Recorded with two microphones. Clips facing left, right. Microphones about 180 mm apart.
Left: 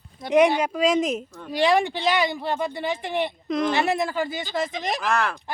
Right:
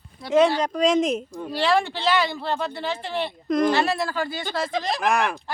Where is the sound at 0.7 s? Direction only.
5° left (ahead or behind).